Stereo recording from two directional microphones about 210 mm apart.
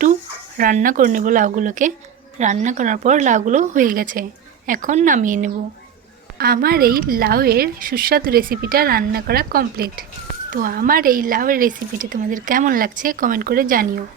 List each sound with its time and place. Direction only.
0.5 s a woman's voice: 40° right (ahead or behind)